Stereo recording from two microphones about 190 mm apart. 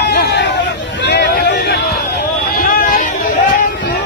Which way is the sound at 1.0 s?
65° left (ahead or behind).